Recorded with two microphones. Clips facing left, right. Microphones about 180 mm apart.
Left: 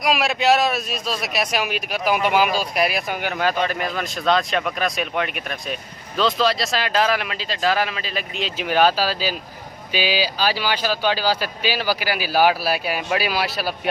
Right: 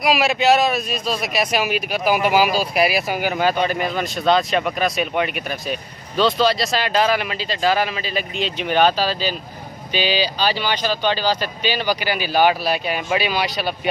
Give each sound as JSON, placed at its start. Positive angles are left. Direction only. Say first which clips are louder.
{"t": 0.0, "sound": "speech", "louder": "right 2 dB", "side_deg": 0}